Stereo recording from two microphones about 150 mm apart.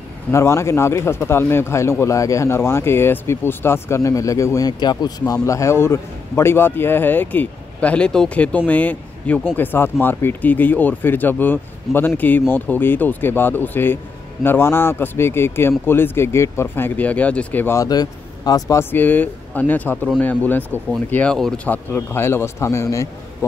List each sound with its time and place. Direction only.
0.3 s a man's voice: 20° left (ahead or behind)